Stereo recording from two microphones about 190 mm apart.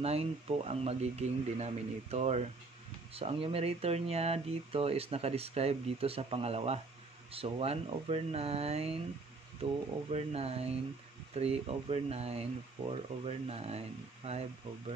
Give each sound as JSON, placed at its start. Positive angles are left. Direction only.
{"t": 0.0, "sound": "speech", "side_deg": -30}